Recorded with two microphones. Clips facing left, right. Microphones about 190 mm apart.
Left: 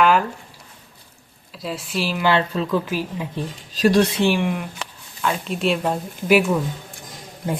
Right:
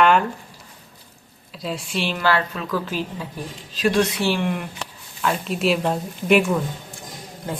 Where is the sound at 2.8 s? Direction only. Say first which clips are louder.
Left 2 dB; 10° left (ahead or behind).